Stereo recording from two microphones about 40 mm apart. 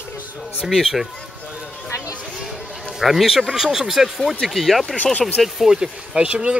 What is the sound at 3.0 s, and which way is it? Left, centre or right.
Speech, centre.